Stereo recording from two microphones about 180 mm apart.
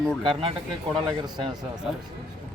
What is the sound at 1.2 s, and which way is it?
Speech, 20° right (ahead or behind).